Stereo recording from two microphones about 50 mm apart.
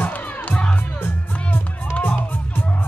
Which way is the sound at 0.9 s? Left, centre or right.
Left.